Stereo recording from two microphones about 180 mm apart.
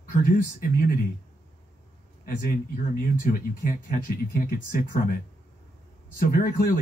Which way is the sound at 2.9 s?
50° left (ahead or behind).